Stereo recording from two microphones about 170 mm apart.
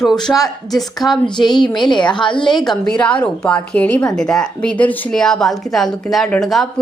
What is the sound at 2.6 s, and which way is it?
Speech, 5° left (ahead or behind).